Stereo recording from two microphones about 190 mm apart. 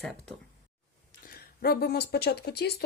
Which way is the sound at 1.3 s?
50° left (ahead or behind).